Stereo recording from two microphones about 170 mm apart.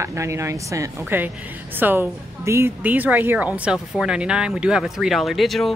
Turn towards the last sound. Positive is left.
turn(degrees=0)  # may be behind; listen again after turning